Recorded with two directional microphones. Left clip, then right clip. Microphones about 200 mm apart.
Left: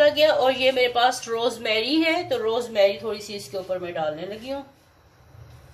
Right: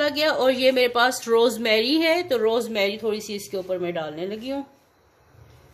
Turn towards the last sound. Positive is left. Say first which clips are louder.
# right 2 dB
turn(degrees=-55)  # may be behind; listen again after turning